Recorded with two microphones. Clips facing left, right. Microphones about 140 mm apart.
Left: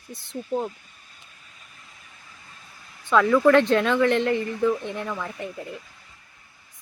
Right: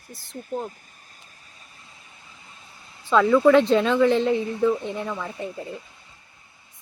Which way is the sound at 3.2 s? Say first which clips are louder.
Right 1 dB; 20° right (ahead or behind).